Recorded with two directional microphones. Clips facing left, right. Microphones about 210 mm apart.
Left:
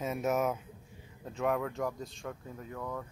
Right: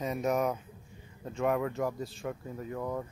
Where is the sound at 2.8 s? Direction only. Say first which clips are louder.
Right 4 dB; 20° right (ahead or behind).